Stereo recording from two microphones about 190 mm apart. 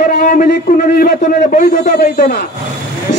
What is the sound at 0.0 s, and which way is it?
A man's voice, 45° left (ahead or behind).